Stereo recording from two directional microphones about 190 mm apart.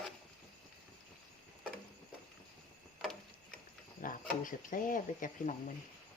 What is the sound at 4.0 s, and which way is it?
Speech, 45° left (ahead or behind).